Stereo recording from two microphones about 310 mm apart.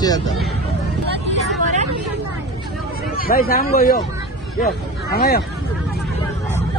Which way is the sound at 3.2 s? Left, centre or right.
Left.